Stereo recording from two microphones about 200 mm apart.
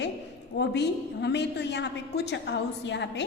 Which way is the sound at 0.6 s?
60° left (ahead or behind).